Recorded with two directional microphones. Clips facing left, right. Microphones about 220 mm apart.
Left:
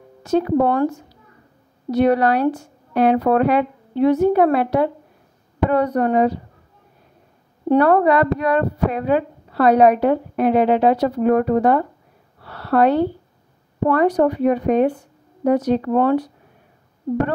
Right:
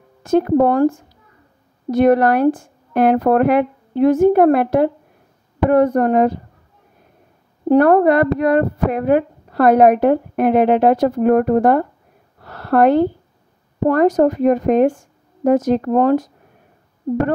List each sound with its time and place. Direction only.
0.2 s speech: 50° right (ahead or behind)
7.7 s speech: 50° right (ahead or behind)
12.4 s a sound: 45° right (ahead or behind)
13.8 s speech: 45° right (ahead or behind)